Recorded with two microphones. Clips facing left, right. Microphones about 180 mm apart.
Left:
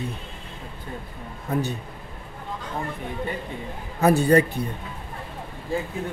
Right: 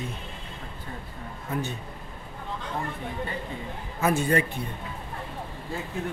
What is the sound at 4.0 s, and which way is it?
Speech, 35° left (ahead or behind).